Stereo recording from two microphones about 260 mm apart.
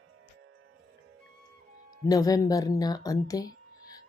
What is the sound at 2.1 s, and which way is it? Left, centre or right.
Speech, centre.